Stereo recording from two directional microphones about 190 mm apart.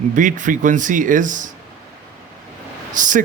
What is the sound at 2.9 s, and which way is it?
Speech, 40° right (ahead or behind).